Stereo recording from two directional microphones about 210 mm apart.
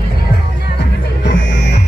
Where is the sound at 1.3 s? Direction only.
60° left (ahead or behind).